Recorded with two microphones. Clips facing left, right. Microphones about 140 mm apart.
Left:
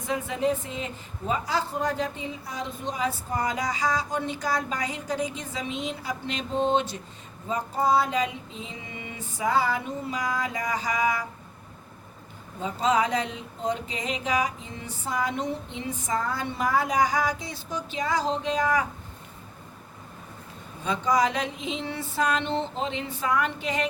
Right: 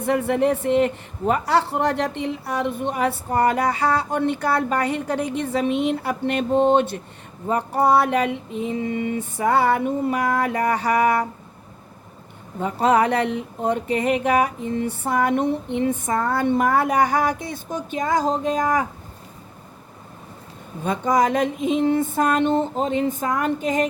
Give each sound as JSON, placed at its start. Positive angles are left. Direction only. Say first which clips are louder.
{"t": 0.0, "sound": "speech", "louder": "right 7 dB", "side_deg": -65}
{"t": 12.5, "sound": "speech", "louder": "right 6 dB", "side_deg": -60}
{"t": 20.8, "sound": "a sound", "louder": "right 4 dB", "side_deg": -50}